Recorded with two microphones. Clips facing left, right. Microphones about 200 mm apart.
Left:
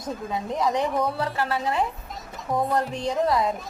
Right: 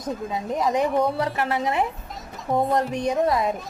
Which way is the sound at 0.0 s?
20° right (ahead or behind).